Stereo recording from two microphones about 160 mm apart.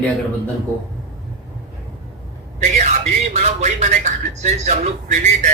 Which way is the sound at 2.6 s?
45° right (ahead or behind).